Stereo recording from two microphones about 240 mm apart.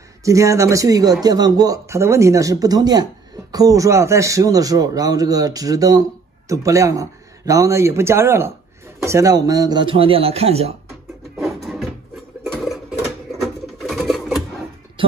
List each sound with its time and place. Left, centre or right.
0.2 s a man's voice: centre
11.3 s a sound: centre
13.8 s sewing machine: centre
15.0 s music: right